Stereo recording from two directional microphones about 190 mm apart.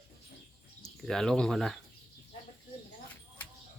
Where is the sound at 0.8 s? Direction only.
5° left (ahead or behind).